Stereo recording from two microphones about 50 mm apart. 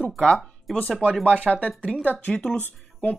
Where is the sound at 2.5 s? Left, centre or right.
Left.